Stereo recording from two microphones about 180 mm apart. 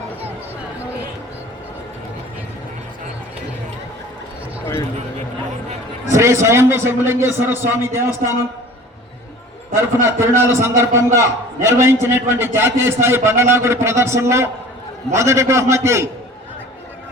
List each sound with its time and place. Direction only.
6.1 s a man's voice: 15° right (ahead or behind)
9.7 s a man's voice: 15° right (ahead or behind)